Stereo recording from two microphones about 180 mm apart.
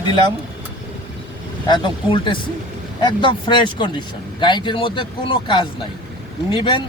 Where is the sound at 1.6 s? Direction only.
25° left (ahead or behind).